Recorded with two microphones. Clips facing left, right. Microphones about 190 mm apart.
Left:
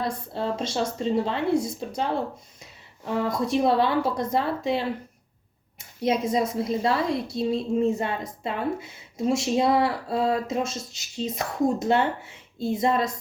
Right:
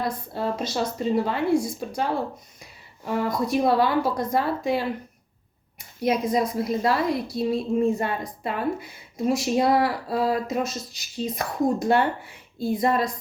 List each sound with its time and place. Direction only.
0.0 s speech: 25° left (ahead or behind)
6.0 s speech: 25° left (ahead or behind)